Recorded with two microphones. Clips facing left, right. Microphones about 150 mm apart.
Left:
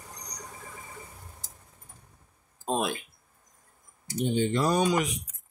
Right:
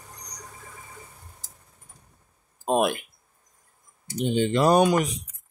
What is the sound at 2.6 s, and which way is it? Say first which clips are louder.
Speech: right 6 dB; 65° right (ahead or behind).